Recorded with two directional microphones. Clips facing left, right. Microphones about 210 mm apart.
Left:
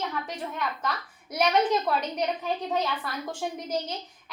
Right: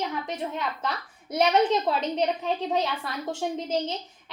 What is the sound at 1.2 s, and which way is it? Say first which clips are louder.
A child's voice: right 2 dB; 25° right (ahead or behind).